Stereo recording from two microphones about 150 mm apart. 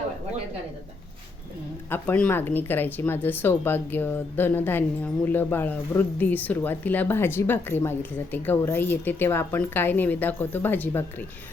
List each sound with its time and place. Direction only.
1.9 s speech: 10° left (ahead or behind)